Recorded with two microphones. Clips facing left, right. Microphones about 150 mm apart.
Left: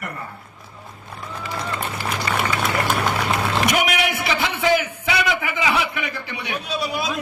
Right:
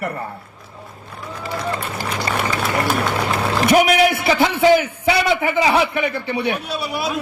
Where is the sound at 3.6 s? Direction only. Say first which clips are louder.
Right 10 dB; 35° right (ahead or behind).